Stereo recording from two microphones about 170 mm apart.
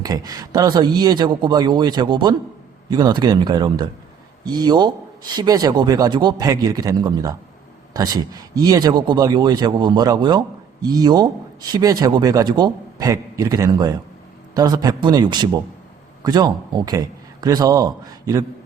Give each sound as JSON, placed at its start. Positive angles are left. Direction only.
{"t": 0.0, "sound": "a man's voice", "side_deg": -20}